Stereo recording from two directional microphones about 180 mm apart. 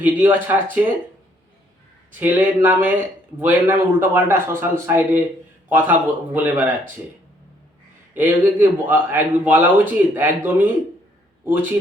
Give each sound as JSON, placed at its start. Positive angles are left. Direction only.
{"t": 0.0, "sound": "a man's voice", "side_deg": -10}
{"t": 2.1, "sound": "a man's voice", "side_deg": -10}
{"t": 8.1, "sound": "a man's voice", "side_deg": -10}